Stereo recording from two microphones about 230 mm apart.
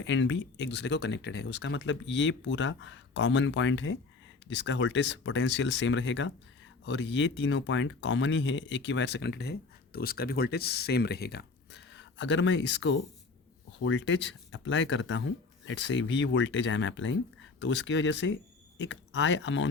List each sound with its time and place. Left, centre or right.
0.1 s speech: left